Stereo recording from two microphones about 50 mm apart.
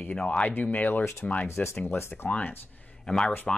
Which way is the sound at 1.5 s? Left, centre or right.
Left.